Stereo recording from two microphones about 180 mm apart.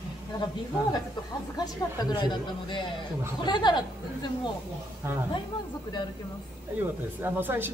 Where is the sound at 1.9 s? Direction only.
25° left (ahead or behind).